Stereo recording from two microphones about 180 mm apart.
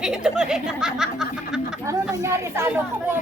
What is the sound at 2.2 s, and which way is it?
Speech, 15° right (ahead or behind).